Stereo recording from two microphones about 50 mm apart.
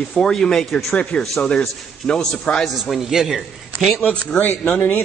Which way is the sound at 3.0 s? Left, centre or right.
Centre.